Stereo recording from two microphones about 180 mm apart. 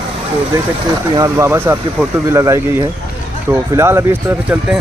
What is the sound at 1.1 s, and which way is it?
Speech, 15° right (ahead or behind).